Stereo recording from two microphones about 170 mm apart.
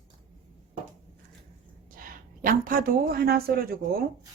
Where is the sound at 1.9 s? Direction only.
55° right (ahead or behind).